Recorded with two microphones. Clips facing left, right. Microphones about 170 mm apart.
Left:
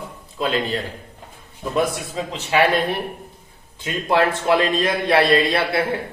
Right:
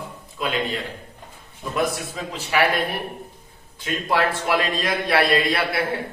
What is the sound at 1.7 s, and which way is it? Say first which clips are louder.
Speech: left 3 dB; 25° left (ahead or behind).